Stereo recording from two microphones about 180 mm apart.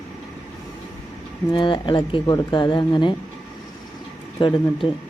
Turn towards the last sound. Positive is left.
turn(degrees=25)  # may be behind; listen again after turning